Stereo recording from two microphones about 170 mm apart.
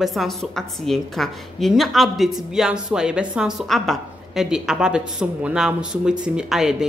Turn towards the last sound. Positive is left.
turn(degrees=-5)  # may be behind; listen again after turning